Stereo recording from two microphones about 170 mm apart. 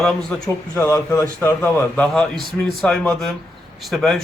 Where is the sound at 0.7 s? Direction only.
15° left (ahead or behind).